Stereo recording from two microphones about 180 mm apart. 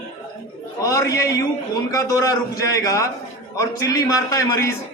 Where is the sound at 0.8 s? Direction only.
20° left (ahead or behind).